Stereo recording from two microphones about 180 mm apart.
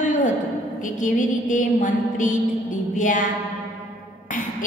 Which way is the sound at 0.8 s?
45° left (ahead or behind).